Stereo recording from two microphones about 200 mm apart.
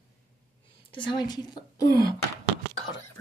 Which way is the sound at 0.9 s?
25° left (ahead or behind).